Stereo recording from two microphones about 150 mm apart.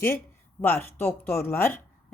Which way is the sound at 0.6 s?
15° left (ahead or behind).